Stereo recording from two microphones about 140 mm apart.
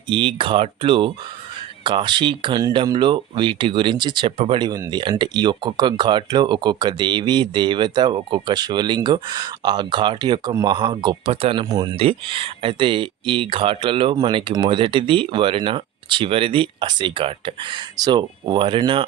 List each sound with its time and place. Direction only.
0.1 s speech: 35° right (ahead or behind)
11.6 s speech: 30° right (ahead or behind)
11.9 s speech: 40° right (ahead or behind)